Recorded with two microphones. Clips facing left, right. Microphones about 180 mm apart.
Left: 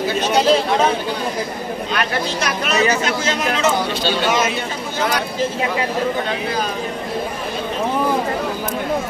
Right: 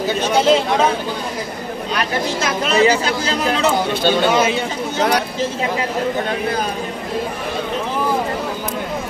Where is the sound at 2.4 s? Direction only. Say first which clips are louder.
Right 4 dB; 30° right (ahead or behind).